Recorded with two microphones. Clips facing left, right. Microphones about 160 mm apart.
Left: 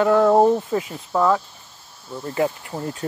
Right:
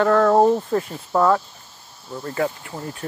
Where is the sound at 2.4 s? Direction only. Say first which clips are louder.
Left 2 dB; 25° left (ahead or behind).